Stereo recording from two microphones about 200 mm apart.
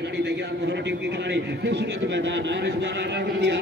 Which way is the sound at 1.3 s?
60° right (ahead or behind).